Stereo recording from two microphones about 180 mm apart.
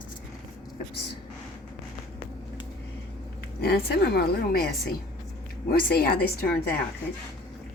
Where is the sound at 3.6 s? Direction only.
60° left (ahead or behind).